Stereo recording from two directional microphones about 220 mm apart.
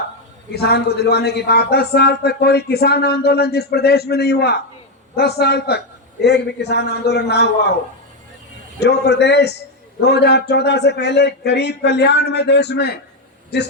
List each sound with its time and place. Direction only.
0.5 s a man's voice: 45° left (ahead or behind)
8.8 s a man's voice: 50° left (ahead or behind)